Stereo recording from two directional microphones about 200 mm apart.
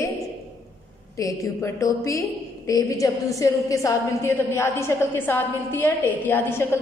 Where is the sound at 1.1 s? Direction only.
15° left (ahead or behind).